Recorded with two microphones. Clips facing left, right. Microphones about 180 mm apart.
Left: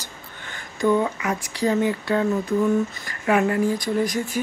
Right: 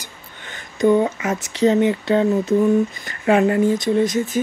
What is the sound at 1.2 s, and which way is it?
Speech, 20° right (ahead or behind).